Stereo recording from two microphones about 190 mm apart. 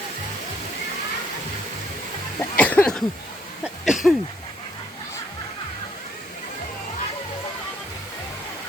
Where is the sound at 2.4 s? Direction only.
10° left (ahead or behind).